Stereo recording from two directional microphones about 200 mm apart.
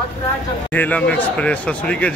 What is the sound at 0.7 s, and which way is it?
Speech, 5° left (ahead or behind).